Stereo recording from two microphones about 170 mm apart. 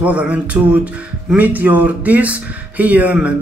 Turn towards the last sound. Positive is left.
turn(degrees=-10)  # may be behind; listen again after turning